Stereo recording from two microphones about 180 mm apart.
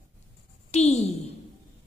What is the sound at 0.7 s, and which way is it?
Speech, 35° left (ahead or behind).